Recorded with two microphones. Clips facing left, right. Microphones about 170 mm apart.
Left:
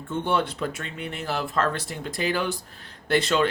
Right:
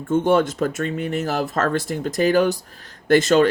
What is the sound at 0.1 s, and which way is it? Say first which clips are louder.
Speech: right 8 dB; 45° right (ahead or behind).